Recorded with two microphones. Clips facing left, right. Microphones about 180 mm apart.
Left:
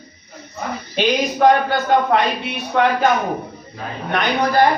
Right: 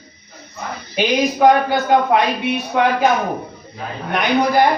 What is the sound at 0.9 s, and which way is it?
A man's voice, 10° right (ahead or behind).